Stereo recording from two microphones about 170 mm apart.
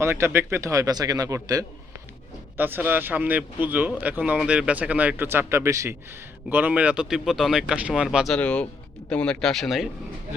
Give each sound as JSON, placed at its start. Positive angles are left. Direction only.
{"t": 0.0, "sound": "a man's voice", "side_deg": -15}